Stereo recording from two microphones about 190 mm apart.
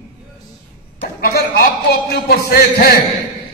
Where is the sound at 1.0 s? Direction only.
55° left (ahead or behind).